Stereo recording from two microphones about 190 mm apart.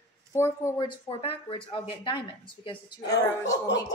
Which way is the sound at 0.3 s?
15° left (ahead or behind).